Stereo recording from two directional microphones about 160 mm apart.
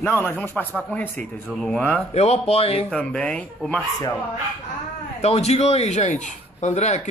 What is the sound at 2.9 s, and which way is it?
Speech, 5° left (ahead or behind).